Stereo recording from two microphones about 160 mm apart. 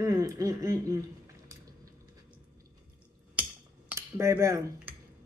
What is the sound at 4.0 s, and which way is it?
Speech, 15° right (ahead or behind).